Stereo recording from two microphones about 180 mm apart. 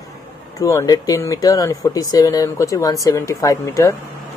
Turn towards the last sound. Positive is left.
turn(degrees=15)  # may be behind; listen again after turning